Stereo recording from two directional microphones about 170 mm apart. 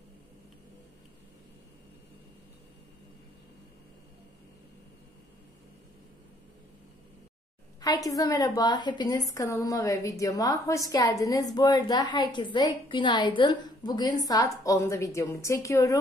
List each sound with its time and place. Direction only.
7.8 s speech: 20° left (ahead or behind)